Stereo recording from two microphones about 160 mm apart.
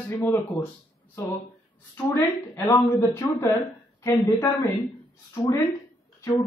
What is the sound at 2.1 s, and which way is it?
A woman's voice, 20° left (ahead or behind).